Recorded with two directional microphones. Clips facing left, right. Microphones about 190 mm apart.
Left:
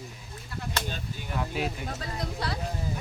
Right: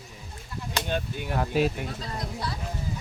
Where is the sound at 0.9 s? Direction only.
55° right (ahead or behind).